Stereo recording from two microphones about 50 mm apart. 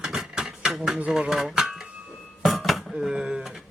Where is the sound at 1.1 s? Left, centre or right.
Centre.